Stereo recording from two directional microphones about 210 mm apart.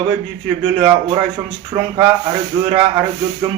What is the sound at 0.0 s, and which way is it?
A man's voice, 25° right (ahead or behind).